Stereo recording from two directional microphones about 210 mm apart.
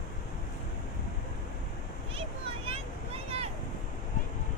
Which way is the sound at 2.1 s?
25° right (ahead or behind).